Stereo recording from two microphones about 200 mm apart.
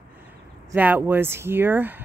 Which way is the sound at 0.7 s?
10° right (ahead or behind).